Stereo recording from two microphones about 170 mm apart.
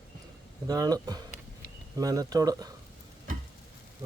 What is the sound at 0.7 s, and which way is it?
Speech, 20° right (ahead or behind).